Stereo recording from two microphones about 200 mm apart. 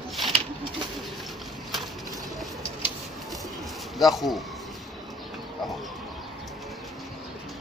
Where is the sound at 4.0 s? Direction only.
Centre (ahead or behind).